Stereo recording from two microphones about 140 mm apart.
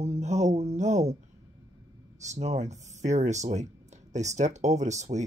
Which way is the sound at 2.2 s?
55° right (ahead or behind).